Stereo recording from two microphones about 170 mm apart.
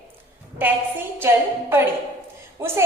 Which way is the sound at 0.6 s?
10° right (ahead or behind).